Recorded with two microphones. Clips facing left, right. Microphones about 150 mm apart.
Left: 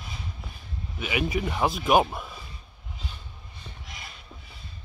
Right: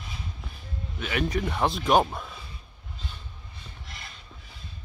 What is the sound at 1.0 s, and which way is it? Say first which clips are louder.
A man's voice: even; 5° left (ahead or behind).